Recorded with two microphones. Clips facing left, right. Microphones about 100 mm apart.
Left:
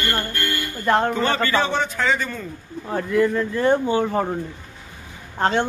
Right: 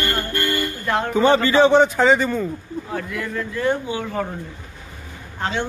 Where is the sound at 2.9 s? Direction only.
25° left (ahead or behind).